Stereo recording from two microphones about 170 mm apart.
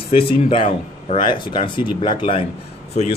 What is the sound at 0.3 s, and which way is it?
Speech, 30° left (ahead or behind).